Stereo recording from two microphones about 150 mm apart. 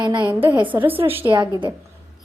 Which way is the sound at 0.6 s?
10° right (ahead or behind).